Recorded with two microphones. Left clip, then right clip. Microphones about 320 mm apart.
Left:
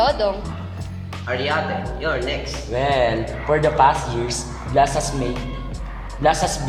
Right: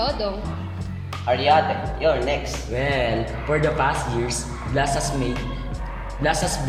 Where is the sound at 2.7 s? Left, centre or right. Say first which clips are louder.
Left 4 dB; centre.